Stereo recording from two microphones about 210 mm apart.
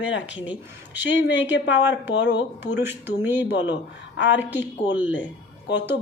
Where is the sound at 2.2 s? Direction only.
55° left (ahead or behind).